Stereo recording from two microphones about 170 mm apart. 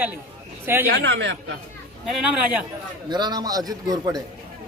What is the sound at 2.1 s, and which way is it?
Speech, 5° right (ahead or behind).